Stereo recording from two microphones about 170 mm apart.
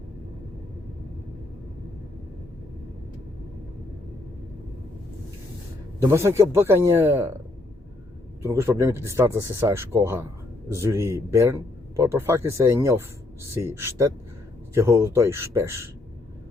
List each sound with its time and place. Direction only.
6.0 s speech: 15° right (ahead or behind)
8.4 s speech: 15° right (ahead or behind)